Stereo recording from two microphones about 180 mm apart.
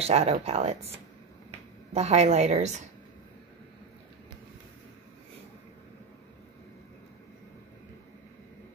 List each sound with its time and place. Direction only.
0.0 s speech: 35° right (ahead or behind)